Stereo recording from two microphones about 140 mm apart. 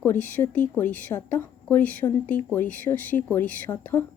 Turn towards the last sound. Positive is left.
turn(degrees=15)  # may be behind; listen again after turning